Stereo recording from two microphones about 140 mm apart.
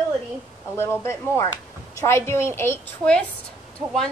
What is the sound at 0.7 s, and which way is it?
A woman's voice, 15° left (ahead or behind).